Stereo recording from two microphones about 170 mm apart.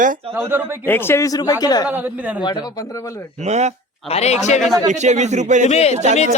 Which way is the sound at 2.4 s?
25° left (ahead or behind).